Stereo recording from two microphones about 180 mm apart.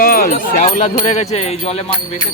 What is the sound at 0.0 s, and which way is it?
Speech, 50° left (ahead or behind).